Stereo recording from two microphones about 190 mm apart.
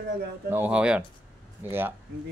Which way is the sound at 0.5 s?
10° right (ahead or behind).